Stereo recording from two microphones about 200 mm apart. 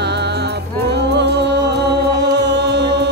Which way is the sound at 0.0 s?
55° right (ahead or behind).